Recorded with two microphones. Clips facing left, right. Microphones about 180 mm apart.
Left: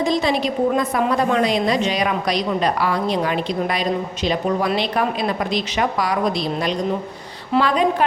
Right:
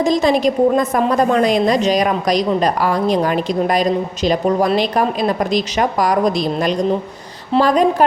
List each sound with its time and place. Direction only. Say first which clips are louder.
0.0 s a woman's voice: right 5 dB; 45° right (ahead or behind)